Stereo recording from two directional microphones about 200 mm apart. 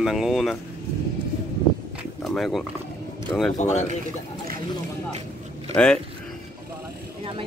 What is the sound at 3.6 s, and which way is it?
Speech, 35° left (ahead or behind).